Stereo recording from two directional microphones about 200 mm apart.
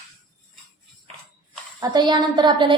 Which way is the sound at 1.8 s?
20° right (ahead or behind).